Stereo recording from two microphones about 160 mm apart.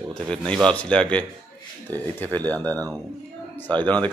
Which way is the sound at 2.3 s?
10° left (ahead or behind).